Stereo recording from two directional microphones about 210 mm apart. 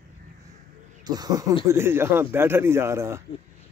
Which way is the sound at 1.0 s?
20° right (ahead or behind).